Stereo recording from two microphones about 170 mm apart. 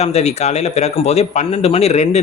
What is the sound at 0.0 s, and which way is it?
Speech, 40° left (ahead or behind).